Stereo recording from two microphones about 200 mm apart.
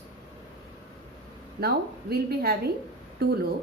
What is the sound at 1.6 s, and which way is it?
Speech, 50° right (ahead or behind).